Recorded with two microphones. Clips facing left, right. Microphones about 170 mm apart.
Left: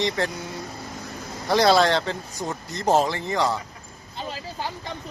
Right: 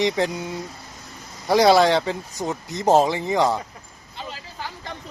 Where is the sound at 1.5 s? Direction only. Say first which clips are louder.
Right 3 dB; 15° right (ahead or behind).